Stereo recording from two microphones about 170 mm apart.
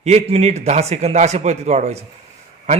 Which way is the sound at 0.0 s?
40° right (ahead or behind).